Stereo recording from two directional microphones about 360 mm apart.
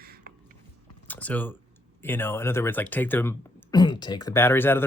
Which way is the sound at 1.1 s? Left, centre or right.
Centre.